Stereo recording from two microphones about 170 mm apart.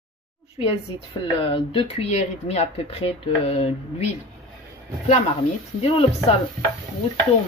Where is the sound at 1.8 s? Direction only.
35° left (ahead or behind).